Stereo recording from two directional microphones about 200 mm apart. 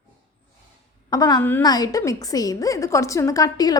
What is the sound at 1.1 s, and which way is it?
A woman's voice, 20° left (ahead or behind).